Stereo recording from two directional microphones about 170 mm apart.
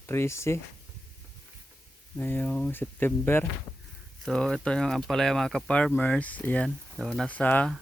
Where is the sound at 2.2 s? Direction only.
10° left (ahead or behind).